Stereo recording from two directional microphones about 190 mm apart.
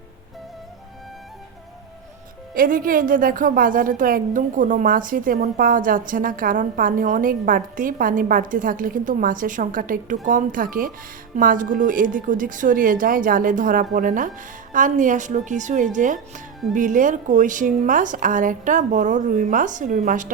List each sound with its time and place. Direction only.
2.6 s a woman's voice: 50° right (ahead or behind)